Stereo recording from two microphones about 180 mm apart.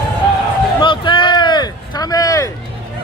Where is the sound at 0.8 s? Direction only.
25° left (ahead or behind).